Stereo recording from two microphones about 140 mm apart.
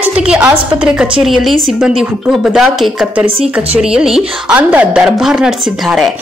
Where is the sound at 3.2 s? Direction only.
45° right (ahead or behind).